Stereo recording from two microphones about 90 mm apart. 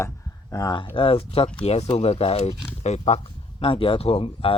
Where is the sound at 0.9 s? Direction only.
90° left.